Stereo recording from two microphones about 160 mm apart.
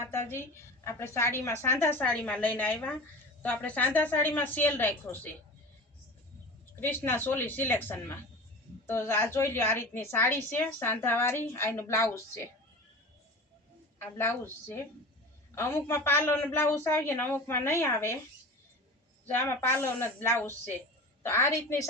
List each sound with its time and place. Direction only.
0.0 s a woman's voice: 15° left (ahead or behind)
6.7 s a woman's voice: 15° left (ahead or behind)
14.0 s a woman's voice: 15° left (ahead or behind)
19.3 s a woman's voice: 15° left (ahead or behind)